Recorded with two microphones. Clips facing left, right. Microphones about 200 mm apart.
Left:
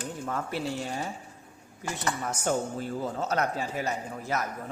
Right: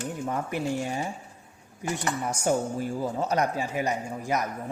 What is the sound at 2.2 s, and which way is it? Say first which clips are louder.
A man's voice: right 3 dB; 10° right (ahead or behind).